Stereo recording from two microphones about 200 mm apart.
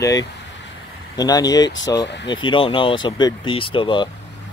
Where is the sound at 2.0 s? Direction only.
60° left (ahead or behind).